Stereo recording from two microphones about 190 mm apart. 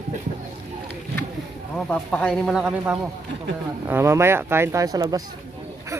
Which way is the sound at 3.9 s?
15° right (ahead or behind).